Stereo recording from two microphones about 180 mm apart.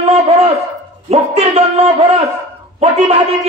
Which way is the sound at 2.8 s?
35° right (ahead or behind).